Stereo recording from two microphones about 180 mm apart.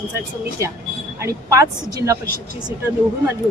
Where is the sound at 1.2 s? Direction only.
15° right (ahead or behind).